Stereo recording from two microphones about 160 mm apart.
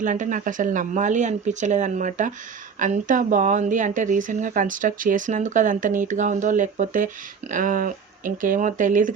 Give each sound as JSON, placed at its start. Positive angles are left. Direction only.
{"t": 0.0, "sound": "speech", "side_deg": -55}